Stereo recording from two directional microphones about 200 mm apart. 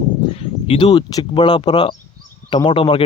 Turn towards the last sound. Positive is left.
turn(degrees=25)  # may be behind; listen again after turning